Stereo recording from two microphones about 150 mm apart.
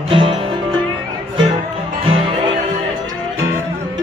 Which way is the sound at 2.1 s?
40° right (ahead or behind).